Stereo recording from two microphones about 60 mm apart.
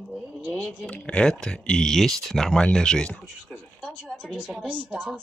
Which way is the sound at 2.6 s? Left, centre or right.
Centre.